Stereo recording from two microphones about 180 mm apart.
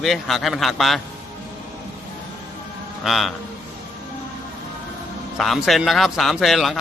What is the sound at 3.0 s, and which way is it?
Speech, centre (ahead or behind).